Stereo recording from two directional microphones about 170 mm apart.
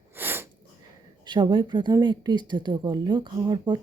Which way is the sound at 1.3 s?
25° right (ahead or behind).